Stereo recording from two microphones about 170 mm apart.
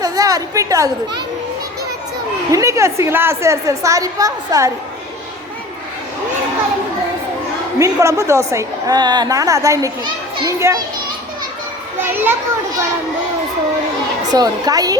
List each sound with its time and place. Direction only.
0.0 s speech: 20° right (ahead or behind)
2.5 s a woman's voice: 20° right (ahead or behind)
7.8 s a woman's voice: 20° right (ahead or behind)
11.9 s a woman's voice: 10° right (ahead or behind)
14.3 s a woman's voice: 25° right (ahead or behind)